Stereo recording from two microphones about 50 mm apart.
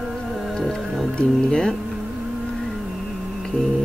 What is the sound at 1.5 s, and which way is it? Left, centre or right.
Speech, centre.